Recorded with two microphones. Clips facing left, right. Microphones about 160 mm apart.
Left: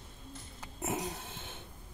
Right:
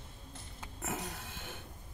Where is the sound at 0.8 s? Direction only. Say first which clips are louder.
Left 4 dB; 20° left (ahead or behind).